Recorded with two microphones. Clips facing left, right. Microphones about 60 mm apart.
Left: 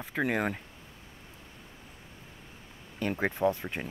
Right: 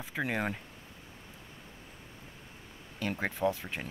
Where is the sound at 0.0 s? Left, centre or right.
Centre.